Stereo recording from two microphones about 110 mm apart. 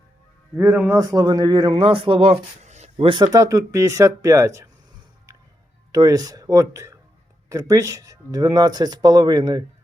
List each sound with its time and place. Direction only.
0.5 s speech: 15° right (ahead or behind)
0.9 s speech: 35° right (ahead or behind)
1.7 s speech: 55° right (ahead or behind); by 3.1 s 85° right
3.3 s speech: 30° right (ahead or behind)
5.9 s speech: 35° right (ahead or behind)